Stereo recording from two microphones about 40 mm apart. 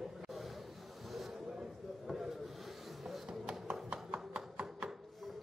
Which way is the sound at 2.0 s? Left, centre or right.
Centre.